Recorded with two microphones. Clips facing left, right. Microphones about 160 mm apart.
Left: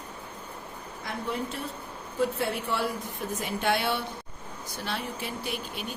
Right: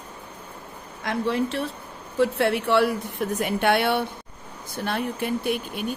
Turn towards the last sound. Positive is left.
turn(degrees=-55)  # may be behind; listen again after turning